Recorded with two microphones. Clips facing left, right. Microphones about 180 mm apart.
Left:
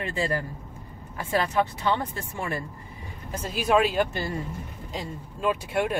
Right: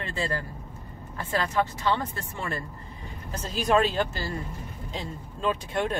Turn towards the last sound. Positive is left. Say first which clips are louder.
# left 2 dB
turn(degrees=10)  # may be behind; listen again after turning